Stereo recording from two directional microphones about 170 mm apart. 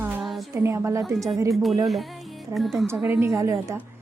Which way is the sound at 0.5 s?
15° right (ahead or behind).